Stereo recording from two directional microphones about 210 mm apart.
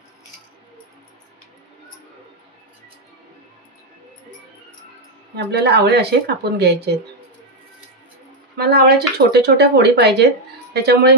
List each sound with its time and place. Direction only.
5.3 s speech: 50° right (ahead or behind)
8.5 s speech: 50° right (ahead or behind)